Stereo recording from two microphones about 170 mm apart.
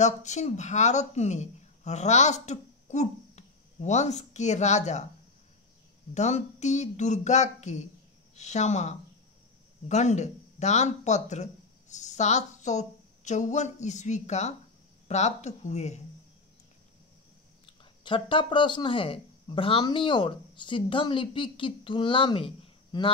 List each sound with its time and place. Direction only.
0.0 s speech: 45° left (ahead or behind)
6.1 s speech: 45° left (ahead or behind)
17.6 s speech: 30° left (ahead or behind)